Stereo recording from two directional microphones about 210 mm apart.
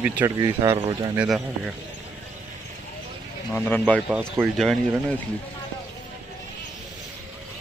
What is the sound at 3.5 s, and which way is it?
A man's voice, 5° left (ahead or behind).